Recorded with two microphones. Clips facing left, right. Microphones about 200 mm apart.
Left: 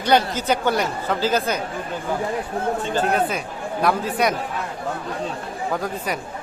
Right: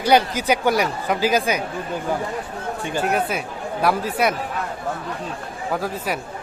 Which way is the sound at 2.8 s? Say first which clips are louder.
Right 2 dB; 10° right (ahead or behind).